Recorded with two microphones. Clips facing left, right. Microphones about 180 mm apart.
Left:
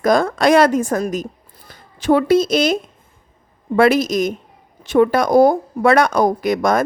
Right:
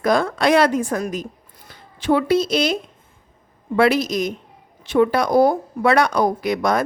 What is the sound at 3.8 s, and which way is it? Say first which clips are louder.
A woman's voice: left 3 dB; 45° left (ahead or behind).